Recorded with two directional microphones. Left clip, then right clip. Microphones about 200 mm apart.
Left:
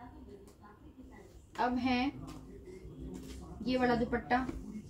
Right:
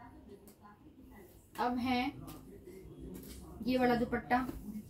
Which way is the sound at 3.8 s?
Centre (ahead or behind).